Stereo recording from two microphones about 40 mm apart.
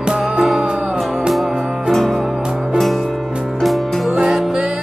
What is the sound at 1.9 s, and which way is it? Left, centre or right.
Music, centre.